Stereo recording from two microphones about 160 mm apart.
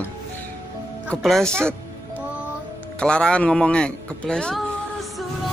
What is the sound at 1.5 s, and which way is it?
Speech, 15° right (ahead or behind).